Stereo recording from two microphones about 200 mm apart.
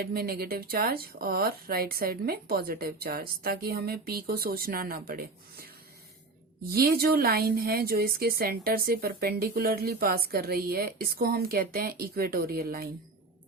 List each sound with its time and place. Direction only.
0.0 s a woman's voice: 50° right (ahead or behind)
6.7 s a woman's voice: 50° right (ahead or behind)